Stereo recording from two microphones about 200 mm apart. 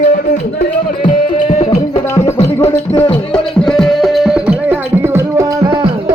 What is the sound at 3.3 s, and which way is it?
Music, centre (ahead or behind).